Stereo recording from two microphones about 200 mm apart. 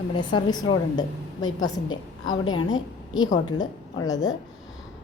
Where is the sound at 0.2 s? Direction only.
20° left (ahead or behind).